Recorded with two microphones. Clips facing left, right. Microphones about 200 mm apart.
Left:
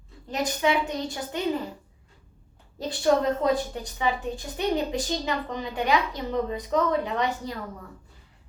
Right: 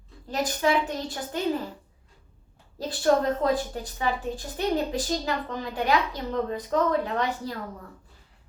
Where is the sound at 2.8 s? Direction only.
Centre (ahead or behind).